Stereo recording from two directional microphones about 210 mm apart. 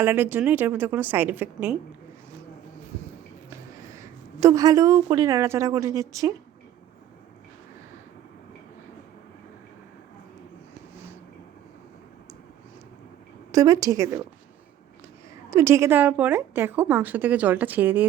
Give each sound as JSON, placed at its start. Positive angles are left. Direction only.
{"t": 0.0, "sound": "a woman's voice", "side_deg": -10}
{"t": 3.5, "sound": "a woman's voice", "side_deg": -15}
{"t": 13.5, "sound": "a woman's voice", "side_deg": -15}
{"t": 15.4, "sound": "a woman's voice", "side_deg": -10}